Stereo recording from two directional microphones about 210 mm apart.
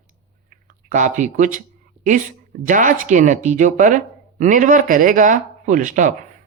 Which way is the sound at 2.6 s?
40° right (ahead or behind).